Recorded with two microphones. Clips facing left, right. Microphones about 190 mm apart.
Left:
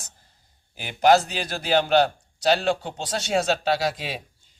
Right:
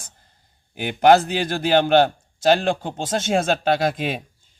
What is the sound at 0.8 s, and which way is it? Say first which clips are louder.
Speech: right 3 dB; 55° right (ahead or behind).